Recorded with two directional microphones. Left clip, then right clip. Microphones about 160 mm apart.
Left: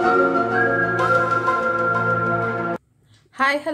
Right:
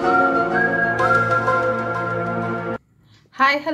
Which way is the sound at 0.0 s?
Centre (ahead or behind).